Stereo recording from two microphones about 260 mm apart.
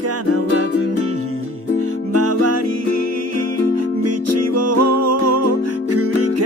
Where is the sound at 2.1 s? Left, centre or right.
Right.